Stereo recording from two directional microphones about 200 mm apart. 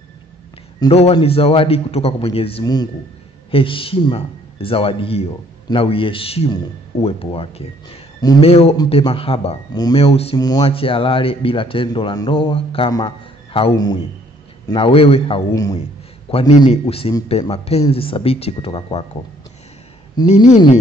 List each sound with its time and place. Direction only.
0.7 s speech: 30° left (ahead or behind)
16.3 s a man's voice: 30° left (ahead or behind)
20.2 s speech: 20° left (ahead or behind)